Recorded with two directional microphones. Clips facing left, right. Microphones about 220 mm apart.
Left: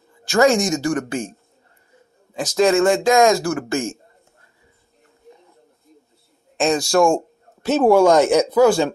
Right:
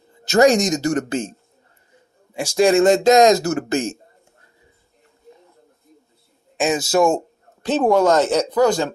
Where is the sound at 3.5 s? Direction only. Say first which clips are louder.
Right 2 dB; 35° right (ahead or behind).